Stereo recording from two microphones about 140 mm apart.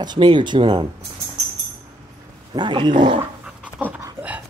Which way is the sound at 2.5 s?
35° right (ahead or behind).